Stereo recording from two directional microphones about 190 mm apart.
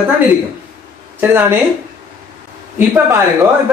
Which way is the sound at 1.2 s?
10° right (ahead or behind).